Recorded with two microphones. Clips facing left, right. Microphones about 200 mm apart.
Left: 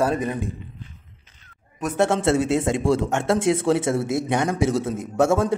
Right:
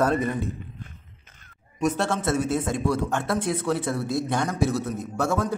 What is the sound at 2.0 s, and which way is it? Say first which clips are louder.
A man's voice: left 5 dB; 25° left (ahead or behind).